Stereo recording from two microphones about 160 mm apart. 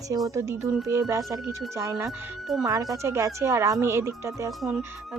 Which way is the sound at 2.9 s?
20° right (ahead or behind).